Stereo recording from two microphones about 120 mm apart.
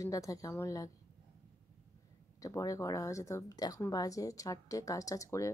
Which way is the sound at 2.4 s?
30° left (ahead or behind).